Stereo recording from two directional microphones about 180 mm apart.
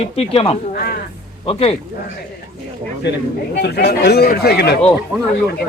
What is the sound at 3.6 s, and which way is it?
Speech, 70° left (ahead or behind).